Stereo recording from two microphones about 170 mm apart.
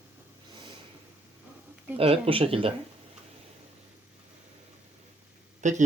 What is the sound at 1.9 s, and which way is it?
Speech, 35° right (ahead or behind).